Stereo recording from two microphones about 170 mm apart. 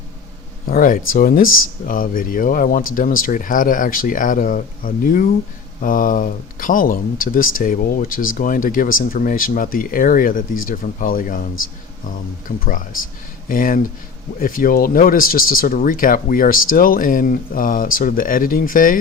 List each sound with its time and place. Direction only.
0.7 s speech: 55° left (ahead or behind)